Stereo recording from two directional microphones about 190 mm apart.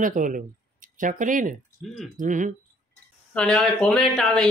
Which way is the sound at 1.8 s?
Centre (ahead or behind).